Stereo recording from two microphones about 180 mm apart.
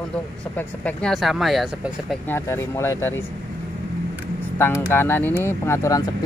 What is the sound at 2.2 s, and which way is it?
Speech, 15° left (ahead or behind).